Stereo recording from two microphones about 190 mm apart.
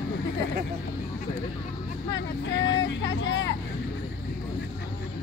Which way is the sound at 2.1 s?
70° left (ahead or behind).